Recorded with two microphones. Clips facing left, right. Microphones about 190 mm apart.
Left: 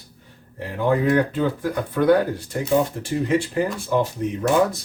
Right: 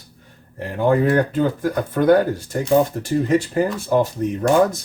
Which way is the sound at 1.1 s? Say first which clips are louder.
Right 2 dB; 45° right (ahead or behind).